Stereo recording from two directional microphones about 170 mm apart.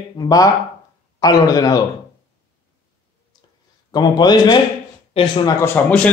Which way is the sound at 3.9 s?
25° left (ahead or behind).